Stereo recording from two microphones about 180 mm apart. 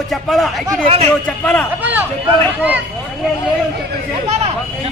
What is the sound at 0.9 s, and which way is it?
Speech, 35° right (ahead or behind).